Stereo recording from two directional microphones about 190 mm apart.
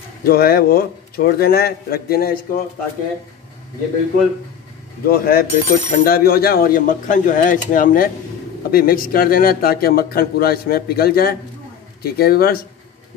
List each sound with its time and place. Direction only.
0.2 s speech: 55° left (ahead or behind)
5.0 s speech: 50° left (ahead or behind)